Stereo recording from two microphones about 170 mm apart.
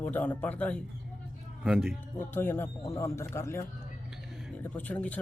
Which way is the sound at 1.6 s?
5° right (ahead or behind).